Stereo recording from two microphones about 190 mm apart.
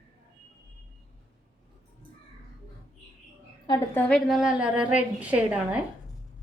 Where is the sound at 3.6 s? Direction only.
20° left (ahead or behind).